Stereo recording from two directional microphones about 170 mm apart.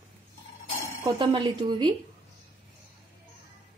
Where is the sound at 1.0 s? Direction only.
30° right (ahead or behind).